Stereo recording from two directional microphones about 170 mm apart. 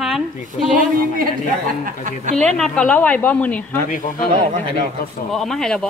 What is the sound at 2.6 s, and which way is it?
Speech, 5° left (ahead or behind).